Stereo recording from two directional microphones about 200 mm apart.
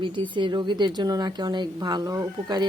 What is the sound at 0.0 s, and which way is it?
A woman's voice, 25° right (ahead or behind).